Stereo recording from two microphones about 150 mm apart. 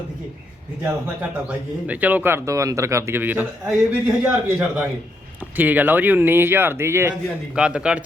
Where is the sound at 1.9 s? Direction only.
10° right (ahead or behind).